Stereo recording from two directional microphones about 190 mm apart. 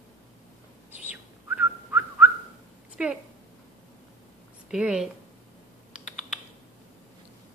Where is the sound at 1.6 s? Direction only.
10° right (ahead or behind).